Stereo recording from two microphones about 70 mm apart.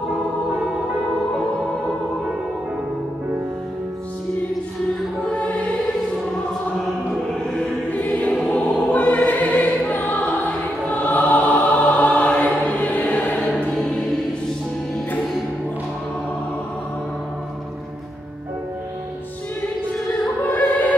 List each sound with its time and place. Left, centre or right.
5.2 s music: centre
7.5 s choir: left
8.4 s music: centre
20.4 s opera: left